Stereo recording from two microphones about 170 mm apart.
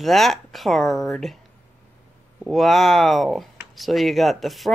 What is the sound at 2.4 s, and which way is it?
Speech, centre (ahead or behind).